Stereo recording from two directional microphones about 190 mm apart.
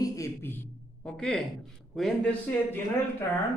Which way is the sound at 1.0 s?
5° left (ahead or behind).